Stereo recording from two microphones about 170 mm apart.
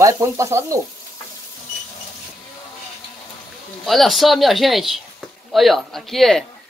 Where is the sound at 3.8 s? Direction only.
Centre (ahead or behind).